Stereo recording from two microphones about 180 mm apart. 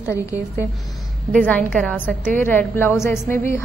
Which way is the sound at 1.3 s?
5° left (ahead or behind).